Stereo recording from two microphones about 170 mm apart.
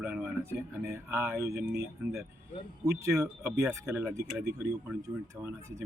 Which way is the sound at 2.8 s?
20° right (ahead or behind).